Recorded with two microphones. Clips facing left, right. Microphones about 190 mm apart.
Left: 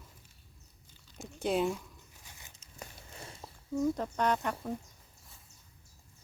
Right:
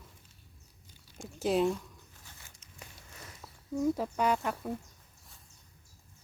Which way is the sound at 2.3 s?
15° left (ahead or behind).